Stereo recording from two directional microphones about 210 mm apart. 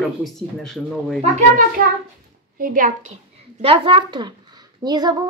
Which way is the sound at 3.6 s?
25° right (ahead or behind).